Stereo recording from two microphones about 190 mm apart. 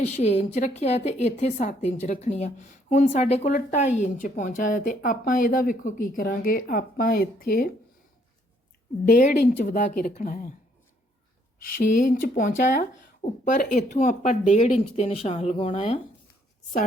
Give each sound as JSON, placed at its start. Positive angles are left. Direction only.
{"t": 0.1, "sound": "a woman's voice", "side_deg": 35}
{"t": 9.0, "sound": "a woman's voice", "side_deg": 45}
{"t": 11.8, "sound": "a woman's voice", "side_deg": 45}